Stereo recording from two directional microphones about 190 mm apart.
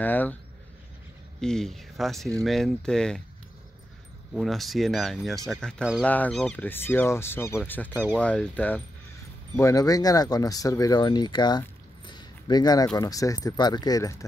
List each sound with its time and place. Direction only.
0.0 s speech: 10° left (ahead or behind)
1.4 s speech: 5° left (ahead or behind)
4.3 s speech: centre (ahead or behind)
7.9 s speech: 10° right (ahead or behind)
8.2 s speech: 5° left (ahead or behind)
9.6 s speech: 15° left (ahead or behind)
12.1 s a sound: 20° left (ahead or behind)
12.9 s speech: 20° left (ahead or behind)